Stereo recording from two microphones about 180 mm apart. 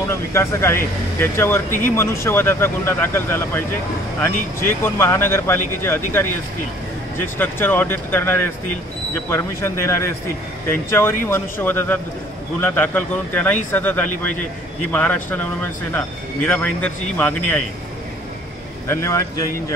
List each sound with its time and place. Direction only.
0.1 s a man's voice: 15° left (ahead or behind)
4.6 s a man's voice: 15° left (ahead or behind)
18.9 s a man's voice: 15° left (ahead or behind)